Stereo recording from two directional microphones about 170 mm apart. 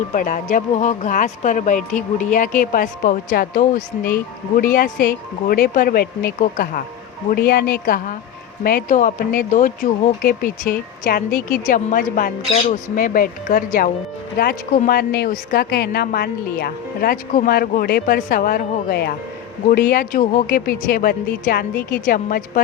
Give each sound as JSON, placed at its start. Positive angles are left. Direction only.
{"t": 0.1, "sound": "speech", "side_deg": 50}
{"t": 14.3, "sound": "a woman's voice", "side_deg": 65}